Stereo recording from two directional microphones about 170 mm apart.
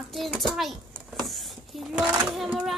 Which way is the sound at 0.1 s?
Centre (ahead or behind).